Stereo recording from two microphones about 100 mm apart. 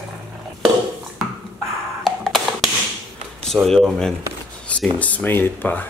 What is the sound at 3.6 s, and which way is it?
Speech, 5° left (ahead or behind).